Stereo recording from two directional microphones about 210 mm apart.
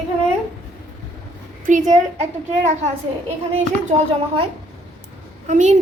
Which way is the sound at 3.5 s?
30° right (ahead or behind).